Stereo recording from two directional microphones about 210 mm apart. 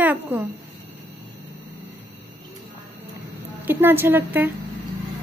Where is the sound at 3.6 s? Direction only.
10° right (ahead or behind).